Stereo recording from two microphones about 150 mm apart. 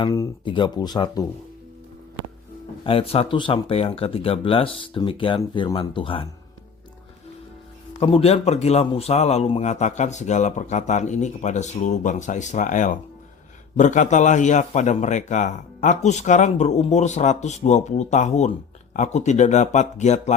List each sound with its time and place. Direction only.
0.0 s speech: 25° left (ahead or behind)
2.8 s speech: 40° left (ahead or behind)
7.9 s a man's voice: 40° left (ahead or behind)